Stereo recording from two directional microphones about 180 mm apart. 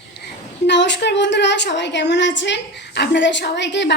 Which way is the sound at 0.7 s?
75° left (ahead or behind).